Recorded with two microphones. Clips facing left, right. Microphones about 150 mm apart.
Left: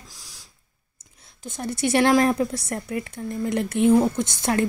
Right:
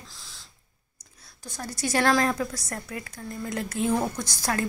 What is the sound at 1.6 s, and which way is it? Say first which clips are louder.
A woman's voice: left 5 dB; 25° left (ahead or behind).